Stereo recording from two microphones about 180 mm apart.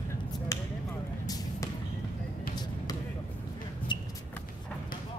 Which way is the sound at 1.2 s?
20° left (ahead or behind).